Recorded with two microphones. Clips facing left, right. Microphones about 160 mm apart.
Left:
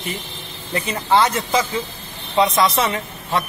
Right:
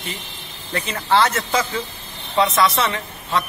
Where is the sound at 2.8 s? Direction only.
20° left (ahead or behind).